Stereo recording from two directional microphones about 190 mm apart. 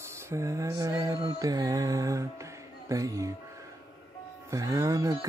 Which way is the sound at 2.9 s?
15° right (ahead or behind).